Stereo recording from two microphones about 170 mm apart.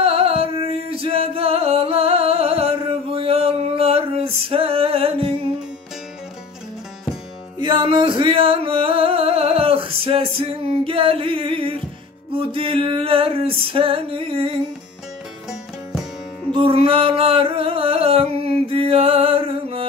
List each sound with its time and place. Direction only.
0.0 s a sound: 35° right (ahead or behind)
0.8 s music: 35° right (ahead or behind)
7.8 s speech: 30° right (ahead or behind)
8.2 s music: 35° right (ahead or behind)
16.5 s music: 30° right (ahead or behind)